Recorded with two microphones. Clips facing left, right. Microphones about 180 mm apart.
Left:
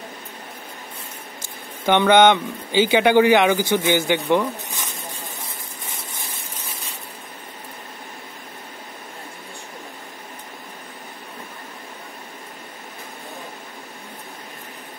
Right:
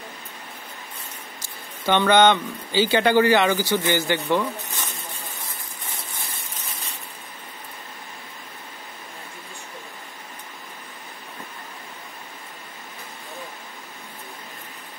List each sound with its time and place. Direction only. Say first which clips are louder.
1.9 s speech: left 3 dB; 15° left (ahead or behind)